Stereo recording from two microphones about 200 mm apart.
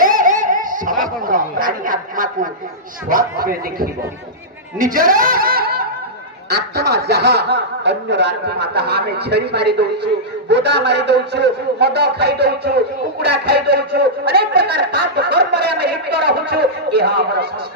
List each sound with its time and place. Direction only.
0.0 s a man's voice: 40° right (ahead or behind)